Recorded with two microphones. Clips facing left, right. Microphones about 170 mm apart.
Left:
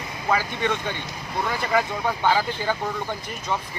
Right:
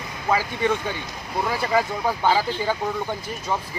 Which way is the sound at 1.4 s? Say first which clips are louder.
Right 1 dB; 5° right (ahead or behind).